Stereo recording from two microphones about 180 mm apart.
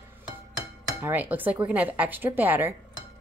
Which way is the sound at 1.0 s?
10° right (ahead or behind).